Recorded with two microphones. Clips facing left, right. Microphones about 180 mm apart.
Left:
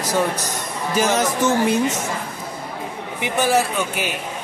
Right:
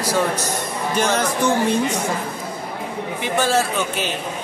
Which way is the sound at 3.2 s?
15° left (ahead or behind).